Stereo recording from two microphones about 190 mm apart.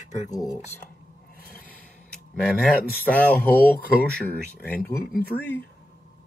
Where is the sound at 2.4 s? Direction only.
5° left (ahead or behind).